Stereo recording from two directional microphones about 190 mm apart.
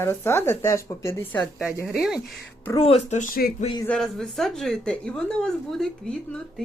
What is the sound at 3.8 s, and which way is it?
A woman's voice, 5° left (ahead or behind).